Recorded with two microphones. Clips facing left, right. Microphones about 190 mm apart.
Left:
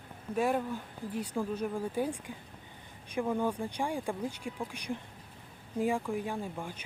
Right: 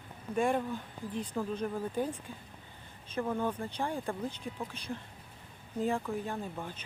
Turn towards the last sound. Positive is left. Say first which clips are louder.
# left 1 dB
turn(degrees=10)  # may be behind; listen again after turning